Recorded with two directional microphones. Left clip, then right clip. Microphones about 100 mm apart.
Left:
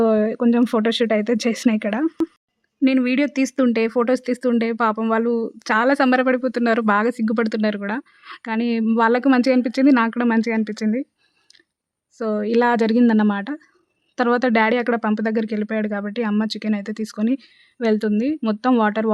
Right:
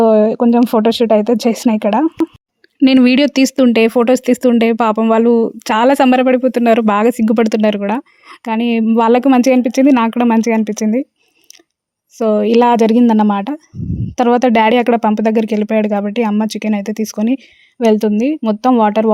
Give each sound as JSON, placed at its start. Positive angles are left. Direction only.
{"t": 0.0, "sound": "a sound", "side_deg": -35}
{"t": 0.7, "sound": "speech", "side_deg": -30}
{"t": 2.2, "sound": "speech", "side_deg": 0}
{"t": 3.0, "sound": "speech", "side_deg": -80}
{"t": 9.0, "sound": "speech", "side_deg": -45}
{"t": 12.2, "sound": "speech", "side_deg": -40}
{"t": 14.6, "sound": "speech", "side_deg": -45}